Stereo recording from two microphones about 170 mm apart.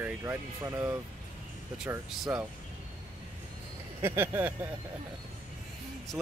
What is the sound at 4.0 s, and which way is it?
Speech, 15° right (ahead or behind).